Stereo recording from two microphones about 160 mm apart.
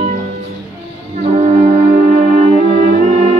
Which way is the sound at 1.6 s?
55° right (ahead or behind).